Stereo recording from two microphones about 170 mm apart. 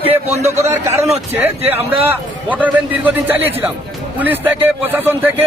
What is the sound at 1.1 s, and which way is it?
Speech, 35° right (ahead or behind).